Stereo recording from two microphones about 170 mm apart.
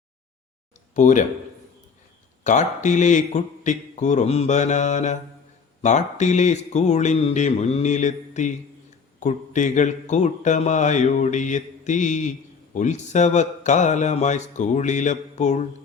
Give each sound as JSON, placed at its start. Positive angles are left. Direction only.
{"t": 0.9, "sound": "mantra", "side_deg": 45}
{"t": 2.4, "sound": "mantra", "side_deg": 45}